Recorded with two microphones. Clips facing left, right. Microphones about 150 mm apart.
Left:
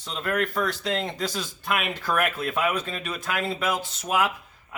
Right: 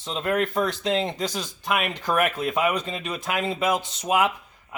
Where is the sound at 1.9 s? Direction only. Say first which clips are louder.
Right 2 dB; 20° right (ahead or behind).